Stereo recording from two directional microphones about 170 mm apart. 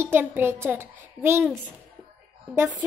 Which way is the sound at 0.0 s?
10° right (ahead or behind).